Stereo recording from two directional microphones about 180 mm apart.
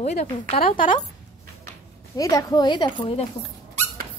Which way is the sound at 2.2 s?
20° left (ahead or behind).